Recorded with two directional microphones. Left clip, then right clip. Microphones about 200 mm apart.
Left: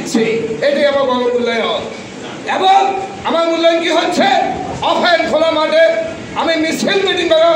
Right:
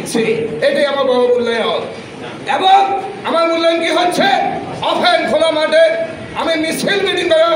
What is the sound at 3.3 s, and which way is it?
A man's voice, 20° right (ahead or behind).